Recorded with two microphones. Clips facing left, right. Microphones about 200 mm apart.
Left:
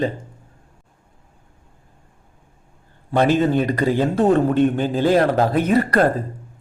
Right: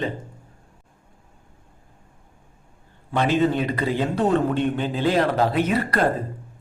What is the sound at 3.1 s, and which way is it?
A man's voice, 45° left (ahead or behind).